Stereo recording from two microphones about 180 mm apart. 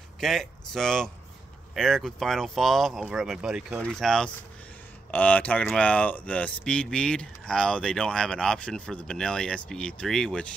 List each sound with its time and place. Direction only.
0.2 s speech: centre (ahead or behind)